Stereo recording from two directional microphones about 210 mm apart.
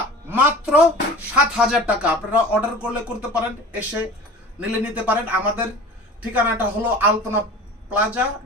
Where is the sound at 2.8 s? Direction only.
5° right (ahead or behind).